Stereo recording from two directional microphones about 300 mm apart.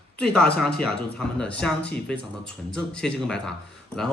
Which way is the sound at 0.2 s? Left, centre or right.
Centre.